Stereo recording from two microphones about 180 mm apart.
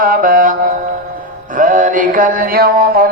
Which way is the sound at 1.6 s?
45° right (ahead or behind).